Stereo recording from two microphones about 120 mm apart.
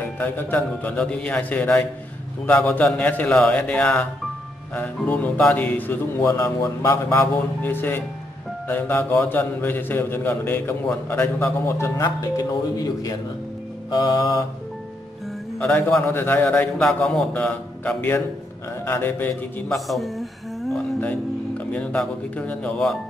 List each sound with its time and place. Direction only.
0.2 s speech: 15° left (ahead or behind); by 13.1 s 30° left (ahead or behind)
13.8 s music: 35° left (ahead or behind)
16.1 s speech: 15° left (ahead or behind)
16.8 s speech: 5° left (ahead or behind)
19.7 s a sound: centre (ahead or behind)
21.0 s speech: 15° left (ahead or behind)